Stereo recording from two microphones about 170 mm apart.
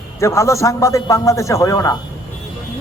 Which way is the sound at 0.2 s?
15° left (ahead or behind).